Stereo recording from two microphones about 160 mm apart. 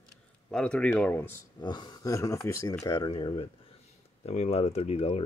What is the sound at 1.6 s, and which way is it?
Speech, 25° left (ahead or behind).